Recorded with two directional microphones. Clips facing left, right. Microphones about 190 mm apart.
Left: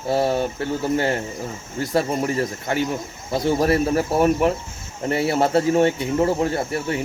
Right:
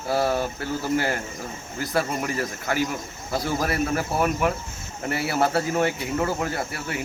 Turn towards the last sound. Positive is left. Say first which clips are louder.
# left 6 dB
turn(degrees=30)  # may be behind; listen again after turning